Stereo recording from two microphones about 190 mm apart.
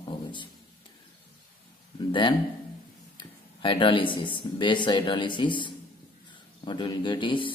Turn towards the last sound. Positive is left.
turn(degrees=25)  # may be behind; listen again after turning